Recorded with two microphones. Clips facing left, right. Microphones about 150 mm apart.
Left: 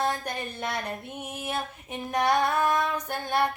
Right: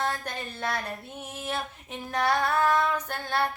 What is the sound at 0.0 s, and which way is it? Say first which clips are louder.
Female singing: left 2 dB; 15° left (ahead or behind).